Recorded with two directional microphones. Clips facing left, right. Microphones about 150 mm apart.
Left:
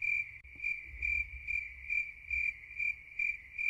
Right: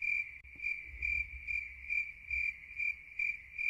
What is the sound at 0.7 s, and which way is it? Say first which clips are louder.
Cricket: left 1 dB; 20° left (ahead or behind).